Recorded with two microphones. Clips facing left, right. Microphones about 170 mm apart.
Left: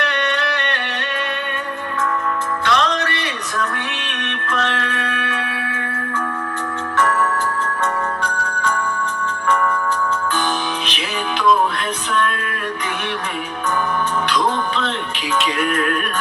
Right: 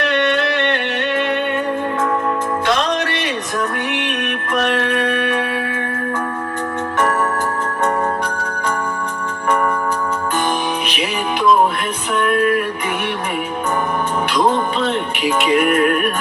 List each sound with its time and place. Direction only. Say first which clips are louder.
0.0 s music: right 5 dB; 20° right (ahead or behind)
2.6 s music: even; 20° right (ahead or behind)
15.5 s music: right 6 dB; 20° right (ahead or behind)